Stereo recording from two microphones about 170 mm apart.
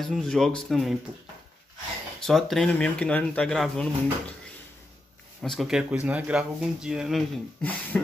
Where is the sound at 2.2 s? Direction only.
Centre (ahead or behind).